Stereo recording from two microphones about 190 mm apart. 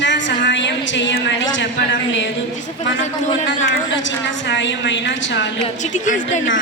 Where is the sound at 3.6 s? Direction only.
75° left (ahead or behind).